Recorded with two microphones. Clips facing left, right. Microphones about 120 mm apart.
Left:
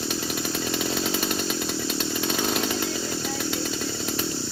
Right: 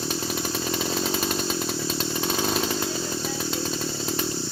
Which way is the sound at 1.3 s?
35° right (ahead or behind).